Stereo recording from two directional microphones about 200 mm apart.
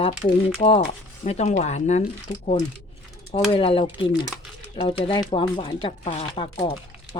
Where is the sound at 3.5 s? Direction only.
25° left (ahead or behind).